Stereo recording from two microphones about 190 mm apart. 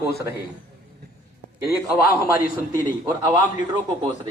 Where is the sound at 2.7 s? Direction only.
20° right (ahead or behind).